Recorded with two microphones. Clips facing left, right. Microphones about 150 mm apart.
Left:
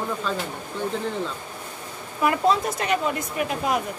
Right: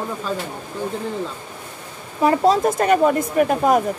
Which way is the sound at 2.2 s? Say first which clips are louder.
Right 5 dB; 35° right (ahead or behind).